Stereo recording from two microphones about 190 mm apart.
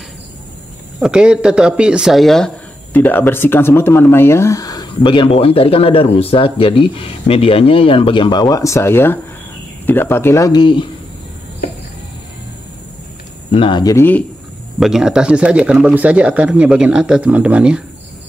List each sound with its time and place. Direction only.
1.0 s speech: 5° right (ahead or behind); by 10.9 s 25° left (ahead or behind)
13.5 s speech: 25° left (ahead or behind)
14.8 s speech: centre (ahead or behind)